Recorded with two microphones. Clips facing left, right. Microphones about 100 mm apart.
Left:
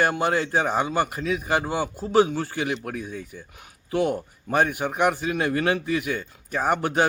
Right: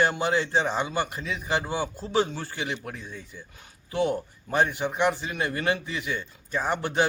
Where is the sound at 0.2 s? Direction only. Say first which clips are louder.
Left 2 dB; 50° left (ahead or behind).